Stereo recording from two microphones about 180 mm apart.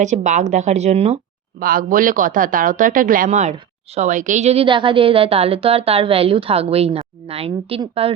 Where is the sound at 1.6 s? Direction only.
50° right (ahead or behind).